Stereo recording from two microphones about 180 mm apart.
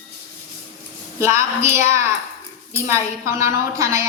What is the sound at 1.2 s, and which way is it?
A woman's voice, 15° right (ahead or behind).